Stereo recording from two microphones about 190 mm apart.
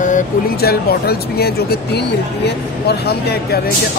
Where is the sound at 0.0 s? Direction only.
50° left (ahead or behind).